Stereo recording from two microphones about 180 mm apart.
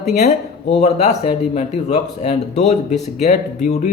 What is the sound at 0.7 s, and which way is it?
A man's voice, 35° left (ahead or behind).